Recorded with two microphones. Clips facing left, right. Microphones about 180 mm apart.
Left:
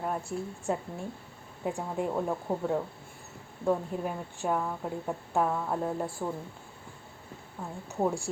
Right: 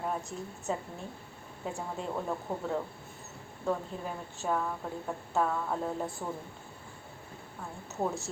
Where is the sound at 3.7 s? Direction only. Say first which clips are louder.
Left 4 dB; 15° left (ahead or behind).